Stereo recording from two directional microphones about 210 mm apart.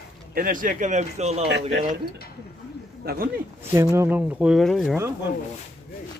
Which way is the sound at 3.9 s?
10° right (ahead or behind).